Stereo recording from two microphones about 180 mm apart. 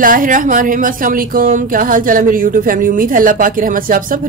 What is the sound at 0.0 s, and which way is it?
Speech, 50° right (ahead or behind).